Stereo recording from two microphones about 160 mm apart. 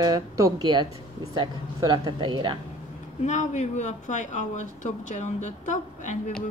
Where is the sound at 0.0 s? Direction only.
25° right (ahead or behind).